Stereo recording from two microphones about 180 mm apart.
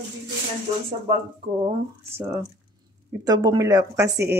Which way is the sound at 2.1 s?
10° right (ahead or behind).